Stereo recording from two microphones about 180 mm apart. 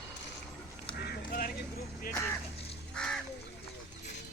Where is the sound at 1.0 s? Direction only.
65° left (ahead or behind).